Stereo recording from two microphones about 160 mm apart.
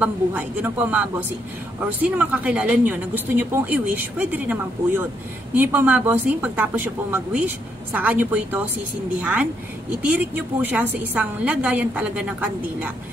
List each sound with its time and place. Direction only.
0.0 s a woman's voice: 10° right (ahead or behind)